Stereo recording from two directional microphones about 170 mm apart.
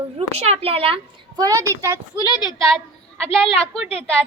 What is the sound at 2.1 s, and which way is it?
Speech, 25° left (ahead or behind).